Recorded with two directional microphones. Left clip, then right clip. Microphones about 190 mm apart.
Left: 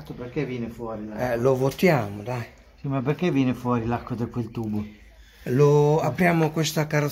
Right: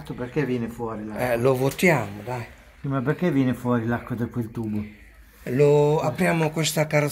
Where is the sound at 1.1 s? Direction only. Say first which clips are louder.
Right 1 dB; 10° left (ahead or behind).